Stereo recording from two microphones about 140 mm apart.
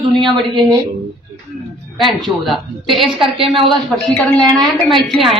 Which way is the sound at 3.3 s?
40° right (ahead or behind).